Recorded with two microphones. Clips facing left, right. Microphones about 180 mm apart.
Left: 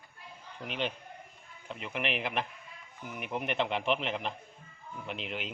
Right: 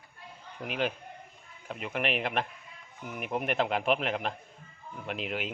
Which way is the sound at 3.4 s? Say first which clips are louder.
Right 2 dB; 45° right (ahead or behind).